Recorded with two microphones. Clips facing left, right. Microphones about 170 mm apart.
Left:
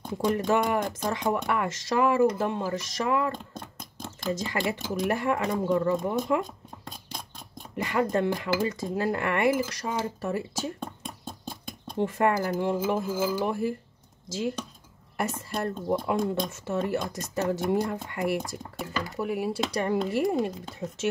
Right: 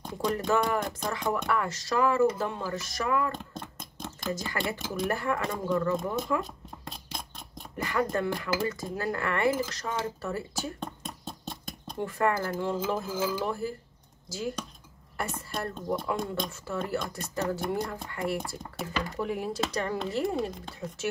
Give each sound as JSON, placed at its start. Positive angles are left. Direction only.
{"t": 0.0, "sound": "speech", "side_deg": 10}
{"t": 7.7, "sound": "speech", "side_deg": 20}
{"t": 12.0, "sound": "speech", "side_deg": 20}
{"t": 15.1, "sound": "speech", "side_deg": 20}